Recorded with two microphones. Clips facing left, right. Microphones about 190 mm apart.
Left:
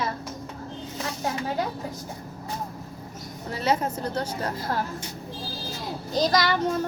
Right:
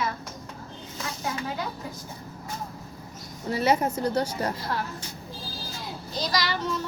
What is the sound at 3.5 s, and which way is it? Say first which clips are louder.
A woman's voice: right 2 dB; 10° right (ahead or behind).